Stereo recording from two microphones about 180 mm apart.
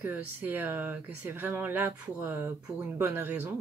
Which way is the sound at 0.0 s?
10° right (ahead or behind).